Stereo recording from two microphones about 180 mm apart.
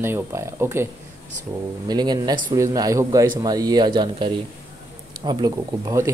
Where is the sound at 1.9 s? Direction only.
20° right (ahead or behind).